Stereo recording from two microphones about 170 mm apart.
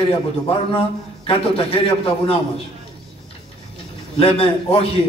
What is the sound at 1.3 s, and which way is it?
A man's voice, 35° left (ahead or behind).